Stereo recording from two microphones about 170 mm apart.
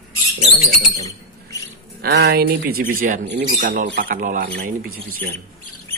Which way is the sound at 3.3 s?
75° right (ahead or behind).